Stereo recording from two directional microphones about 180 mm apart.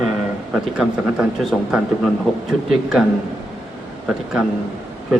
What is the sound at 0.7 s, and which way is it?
Speech, 5° right (ahead or behind).